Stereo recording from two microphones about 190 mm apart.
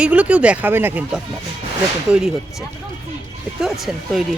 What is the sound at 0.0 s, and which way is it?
Speech, 5° right (ahead or behind).